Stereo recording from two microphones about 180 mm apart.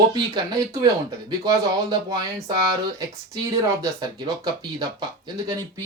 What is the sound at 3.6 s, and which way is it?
Speech, 15° right (ahead or behind).